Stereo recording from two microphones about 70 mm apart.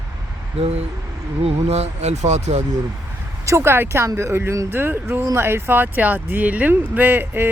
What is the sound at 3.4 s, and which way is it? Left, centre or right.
Speech, right.